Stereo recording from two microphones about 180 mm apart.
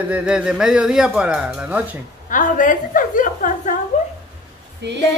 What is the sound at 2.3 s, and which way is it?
A woman's voice, 45° left (ahead or behind).